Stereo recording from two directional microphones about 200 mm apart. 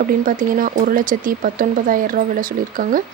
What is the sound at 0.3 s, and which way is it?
Speech, 45° right (ahead or behind).